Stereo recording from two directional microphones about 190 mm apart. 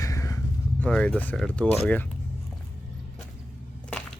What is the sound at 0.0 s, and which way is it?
Vehicle, 15° left (ahead or behind).